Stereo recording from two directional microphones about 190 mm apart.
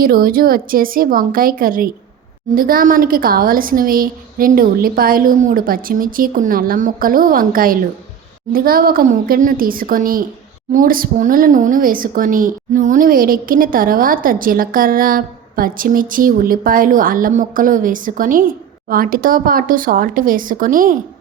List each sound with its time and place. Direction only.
0.0 s a woman's voice: 50° right (ahead or behind)